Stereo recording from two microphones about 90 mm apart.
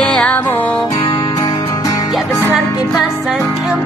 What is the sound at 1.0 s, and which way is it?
Music, 70° left (ahead or behind).